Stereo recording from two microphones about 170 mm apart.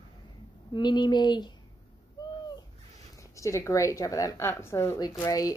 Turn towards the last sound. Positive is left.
turn(degrees=20)  # may be behind; listen again after turning